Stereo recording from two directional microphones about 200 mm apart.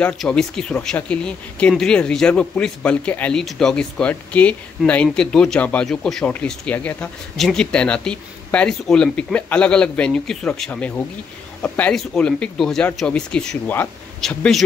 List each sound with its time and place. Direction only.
0.0 s speech: 5° left (ahead or behind)